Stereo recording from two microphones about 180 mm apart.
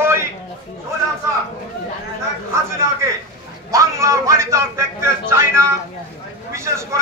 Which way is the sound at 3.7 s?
15° right (ahead or behind).